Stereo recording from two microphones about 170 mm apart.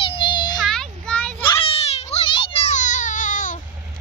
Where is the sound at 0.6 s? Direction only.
5° left (ahead or behind).